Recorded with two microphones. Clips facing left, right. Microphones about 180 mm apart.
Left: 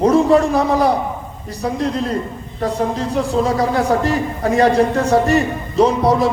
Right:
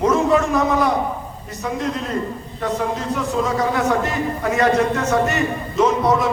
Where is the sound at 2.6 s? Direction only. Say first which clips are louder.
Left 3 dB; 35° left (ahead or behind).